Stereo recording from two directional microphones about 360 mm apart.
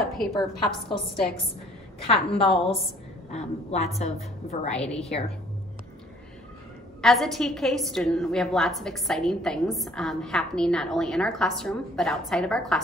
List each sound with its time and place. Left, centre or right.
0.0 s a sound: centre
0.6 s a woman's voice: centre
2.5 s a woman's voice: centre
4.7 s a woman's voice: centre
7.0 s a woman's voice: centre